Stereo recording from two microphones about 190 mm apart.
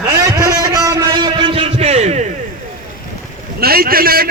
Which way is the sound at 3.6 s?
50° right (ahead or behind).